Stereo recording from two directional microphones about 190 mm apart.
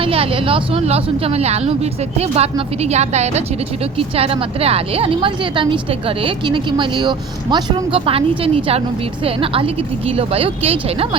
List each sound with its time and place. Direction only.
0.0 s a woman's voice: 30° right (ahead or behind)
9.2 s a woman's voice: 30° right (ahead or behind)